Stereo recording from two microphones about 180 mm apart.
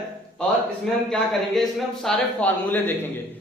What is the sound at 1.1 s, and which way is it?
A man's voice, centre (ahead or behind).